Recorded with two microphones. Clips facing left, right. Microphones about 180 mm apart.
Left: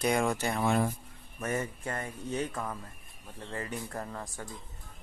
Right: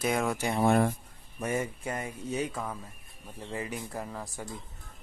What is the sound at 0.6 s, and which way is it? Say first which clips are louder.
Speech: right 4 dB; 60° right (ahead or behind).